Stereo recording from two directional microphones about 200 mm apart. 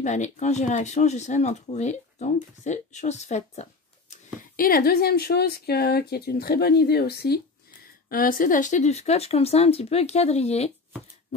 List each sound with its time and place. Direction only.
0.0 s speech: 35° left (ahead or behind)
4.4 s a woman's voice: 45° left (ahead or behind)